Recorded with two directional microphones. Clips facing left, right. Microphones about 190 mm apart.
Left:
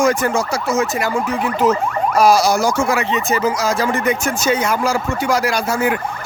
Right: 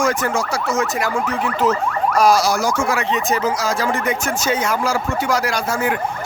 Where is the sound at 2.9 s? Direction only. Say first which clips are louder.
Left 1 dB; 5° left (ahead or behind).